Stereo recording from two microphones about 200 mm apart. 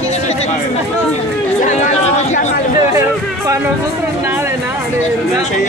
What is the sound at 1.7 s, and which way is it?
Speech, 35° left (ahead or behind).